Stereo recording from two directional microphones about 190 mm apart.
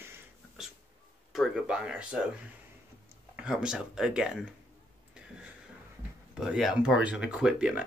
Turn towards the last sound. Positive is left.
turn(degrees=-5)  # may be behind; listen again after turning